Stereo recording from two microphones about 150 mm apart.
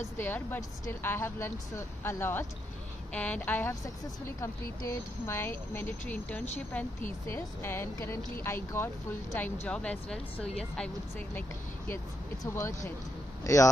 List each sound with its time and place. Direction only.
0.2 s speech: 15° left (ahead or behind)
12.5 s speech: 20° left (ahead or behind)